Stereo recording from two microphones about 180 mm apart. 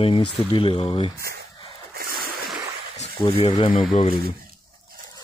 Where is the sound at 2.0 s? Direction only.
55° right (ahead or behind).